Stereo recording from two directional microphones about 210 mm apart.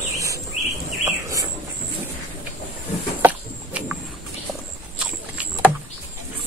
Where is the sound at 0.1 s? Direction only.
15° right (ahead or behind).